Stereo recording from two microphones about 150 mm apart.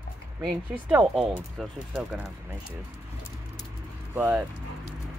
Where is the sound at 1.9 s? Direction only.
15° right (ahead or behind).